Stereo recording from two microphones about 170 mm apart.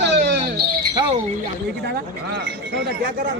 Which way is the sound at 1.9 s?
90° right.